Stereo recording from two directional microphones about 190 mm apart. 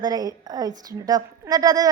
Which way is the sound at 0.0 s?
20° right (ahead or behind).